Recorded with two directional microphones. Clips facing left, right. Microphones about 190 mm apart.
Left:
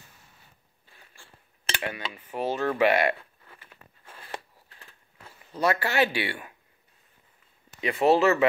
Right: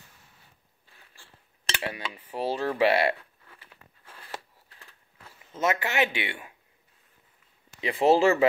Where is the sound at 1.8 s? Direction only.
30° right (ahead or behind).